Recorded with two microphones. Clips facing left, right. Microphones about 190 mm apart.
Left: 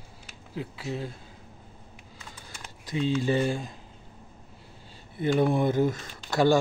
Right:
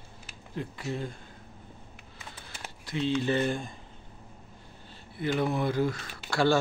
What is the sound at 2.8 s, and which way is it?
Speech, 10° left (ahead or behind).